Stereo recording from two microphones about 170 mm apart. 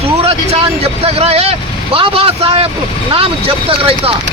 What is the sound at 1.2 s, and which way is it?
Speech, 35° right (ahead or behind).